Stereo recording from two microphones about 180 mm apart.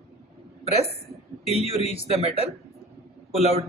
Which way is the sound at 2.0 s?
30° right (ahead or behind).